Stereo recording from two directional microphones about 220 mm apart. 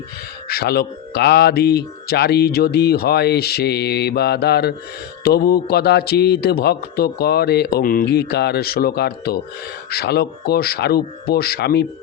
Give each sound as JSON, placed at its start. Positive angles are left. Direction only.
{"t": 0.4, "sound": "speech", "side_deg": 45}